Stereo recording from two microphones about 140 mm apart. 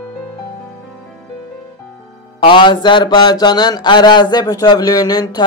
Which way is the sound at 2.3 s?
35° left (ahead or behind).